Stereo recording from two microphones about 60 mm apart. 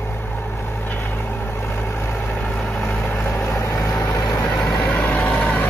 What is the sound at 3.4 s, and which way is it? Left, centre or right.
Vehicle, left.